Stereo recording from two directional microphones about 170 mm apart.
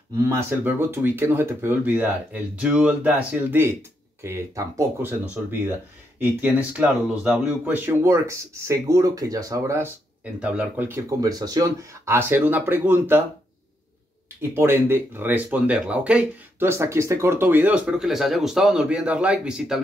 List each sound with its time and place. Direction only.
0.2 s speech: 15° right (ahead or behind)
6.1 s speech: 10° right (ahead or behind)
10.4 s speech: 5° right (ahead or behind)
14.5 s speech: 15° right (ahead or behind)